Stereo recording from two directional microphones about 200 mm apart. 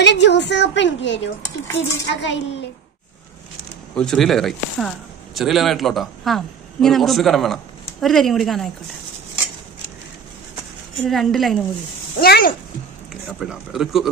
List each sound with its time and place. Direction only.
0.0 s a woman's voice: 60° left (ahead or behind)
3.9 s speech: 5° left (ahead or behind)
11.1 s a woman's voice: centre (ahead or behind)
12.2 s speech: 50° left (ahead or behind)
13.1 s a man's voice: centre (ahead or behind)